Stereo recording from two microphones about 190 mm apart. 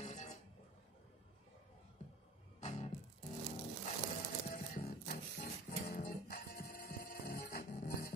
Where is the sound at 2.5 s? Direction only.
35° left (ahead or behind).